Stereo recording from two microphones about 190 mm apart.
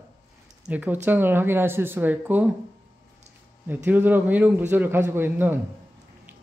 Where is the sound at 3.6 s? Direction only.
10° right (ahead or behind).